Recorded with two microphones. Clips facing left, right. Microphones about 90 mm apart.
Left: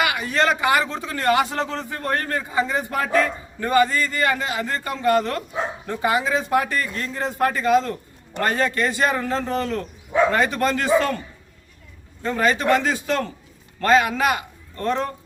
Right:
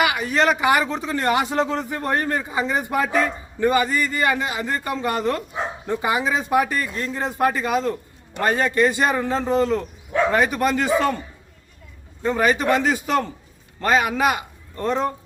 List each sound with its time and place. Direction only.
0.0 s a man's voice: 15° right (ahead or behind)
12.2 s a man's voice: 15° right (ahead or behind)